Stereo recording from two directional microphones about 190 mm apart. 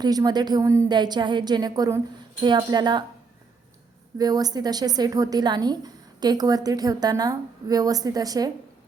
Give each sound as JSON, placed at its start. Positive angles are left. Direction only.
{"t": 0.0, "sound": "a woman's voice", "side_deg": -20}
{"t": 4.2, "sound": "a woman's voice", "side_deg": -20}